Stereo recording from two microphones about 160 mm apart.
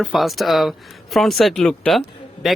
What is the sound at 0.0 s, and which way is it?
Speech, 5° right (ahead or behind).